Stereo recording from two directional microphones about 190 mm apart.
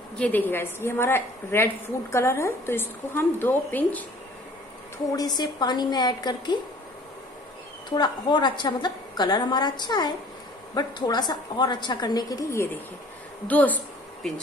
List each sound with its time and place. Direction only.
0.2 s a woman's voice: 10° left (ahead or behind)
5.1 s a woman's voice: 20° left (ahead or behind)
7.9 s a woman's voice: 25° left (ahead or behind); by 13.7 s 10° left (ahead or behind)